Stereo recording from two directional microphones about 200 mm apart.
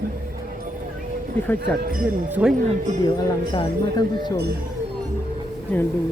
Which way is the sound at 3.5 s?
20° left (ahead or behind).